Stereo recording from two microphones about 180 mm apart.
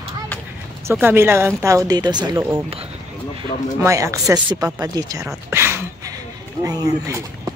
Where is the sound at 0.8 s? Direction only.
10° right (ahead or behind).